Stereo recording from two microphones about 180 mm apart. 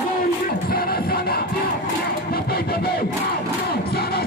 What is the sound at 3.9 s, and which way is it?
Crowd, 60° left (ahead or behind).